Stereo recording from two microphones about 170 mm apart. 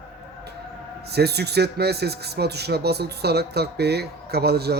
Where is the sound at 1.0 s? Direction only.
70° right (ahead or behind).